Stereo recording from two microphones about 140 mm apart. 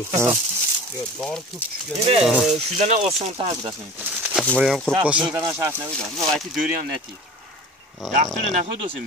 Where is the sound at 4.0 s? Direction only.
15° right (ahead or behind).